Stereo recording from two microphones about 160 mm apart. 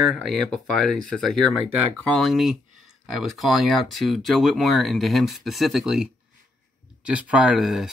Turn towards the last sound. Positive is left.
turn(degrees=-5)  # may be behind; listen again after turning